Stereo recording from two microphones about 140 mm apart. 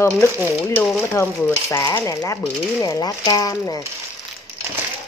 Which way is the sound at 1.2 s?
20° left (ahead or behind).